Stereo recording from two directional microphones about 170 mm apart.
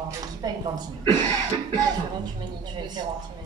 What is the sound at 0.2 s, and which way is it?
Speech, 25° right (ahead or behind).